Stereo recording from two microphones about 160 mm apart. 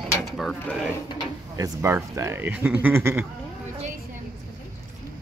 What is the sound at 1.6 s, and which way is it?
Speech, 15° right (ahead or behind).